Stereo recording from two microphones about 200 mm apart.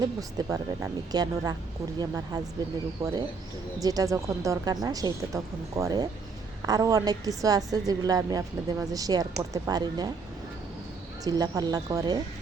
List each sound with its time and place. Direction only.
0.0 s a woman's voice: 20° right (ahead or behind)
11.2 s a woman's voice: 20° right (ahead or behind)